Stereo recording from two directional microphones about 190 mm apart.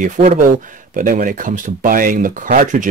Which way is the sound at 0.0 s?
40° right (ahead or behind).